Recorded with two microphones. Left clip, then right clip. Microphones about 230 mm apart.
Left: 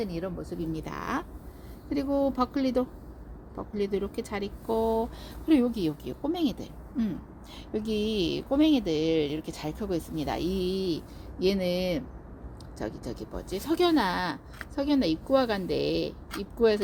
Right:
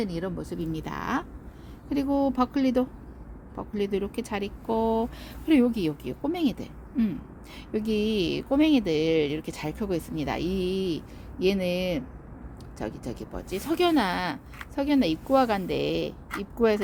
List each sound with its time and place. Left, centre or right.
0.0 s speech: centre